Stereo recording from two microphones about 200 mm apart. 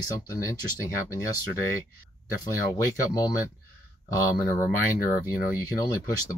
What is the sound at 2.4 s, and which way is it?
Speech, 20° left (ahead or behind).